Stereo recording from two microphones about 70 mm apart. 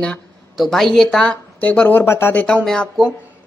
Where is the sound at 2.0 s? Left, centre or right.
Left.